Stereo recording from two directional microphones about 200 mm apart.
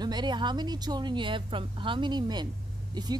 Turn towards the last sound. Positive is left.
turn(degrees=-20)  # may be behind; listen again after turning